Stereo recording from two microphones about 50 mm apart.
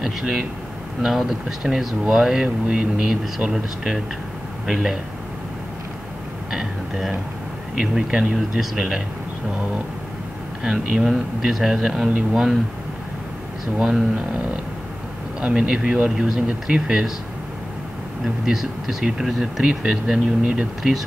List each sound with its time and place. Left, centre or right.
0.0 s speech: centre
3.1 s speech: centre
6.5 s a sound: centre
7.7 s speech: centre
10.6 s speech: centre
13.7 s speech: centre
15.4 s speech: centre
18.4 s speech: centre